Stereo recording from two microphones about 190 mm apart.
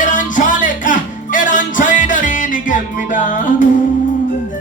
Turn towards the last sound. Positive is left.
turn(degrees=40)  # may be behind; listen again after turning